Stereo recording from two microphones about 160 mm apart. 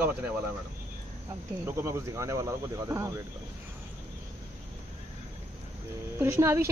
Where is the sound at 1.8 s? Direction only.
20° right (ahead or behind).